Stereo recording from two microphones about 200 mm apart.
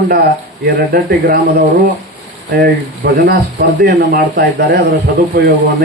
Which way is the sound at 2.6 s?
50° right (ahead or behind).